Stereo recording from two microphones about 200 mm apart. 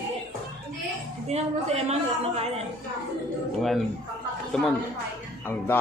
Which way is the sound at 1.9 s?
30° right (ahead or behind).